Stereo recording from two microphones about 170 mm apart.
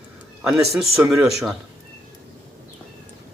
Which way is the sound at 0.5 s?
15° right (ahead or behind).